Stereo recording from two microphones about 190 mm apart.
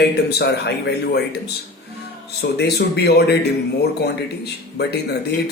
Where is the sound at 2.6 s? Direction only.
60° left (ahead or behind).